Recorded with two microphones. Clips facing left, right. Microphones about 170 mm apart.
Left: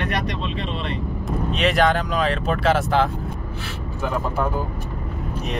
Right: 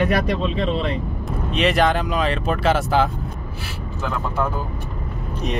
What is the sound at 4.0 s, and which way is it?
Speech, 15° left (ahead or behind).